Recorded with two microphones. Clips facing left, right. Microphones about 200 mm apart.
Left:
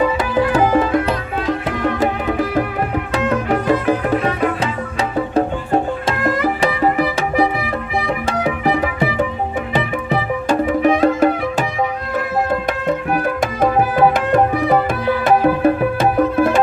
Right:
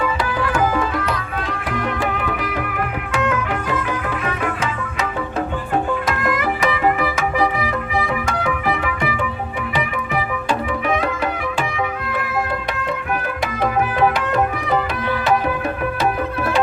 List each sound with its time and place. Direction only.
0.5 s music: 30° left (ahead or behind)
3.2 s music: 35° left (ahead or behind)
6.1 s music: 30° left (ahead or behind)
8.3 s music: 35° left (ahead or behind)
10.7 s music: 45° left (ahead or behind)
13.6 s tabla: 45° left (ahead or behind)